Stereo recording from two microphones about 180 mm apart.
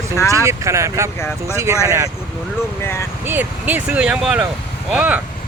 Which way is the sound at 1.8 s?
15° right (ahead or behind).